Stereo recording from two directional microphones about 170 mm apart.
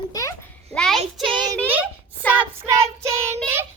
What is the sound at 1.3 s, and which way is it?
Speech, 25° right (ahead or behind).